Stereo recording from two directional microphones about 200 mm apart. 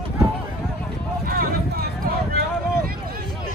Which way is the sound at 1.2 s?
45° right (ahead or behind).